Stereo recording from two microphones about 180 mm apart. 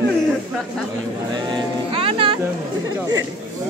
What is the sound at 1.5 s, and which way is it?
Music, 30° right (ahead or behind).